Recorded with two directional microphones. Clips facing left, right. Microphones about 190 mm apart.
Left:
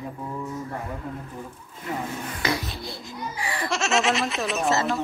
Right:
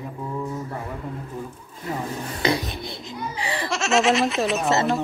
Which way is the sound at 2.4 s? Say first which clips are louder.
Right 5 dB; 20° right (ahead or behind).